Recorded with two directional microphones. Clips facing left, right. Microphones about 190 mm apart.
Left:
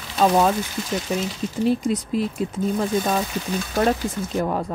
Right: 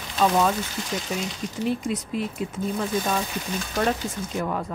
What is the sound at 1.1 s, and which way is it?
Speech, 35° left (ahead or behind).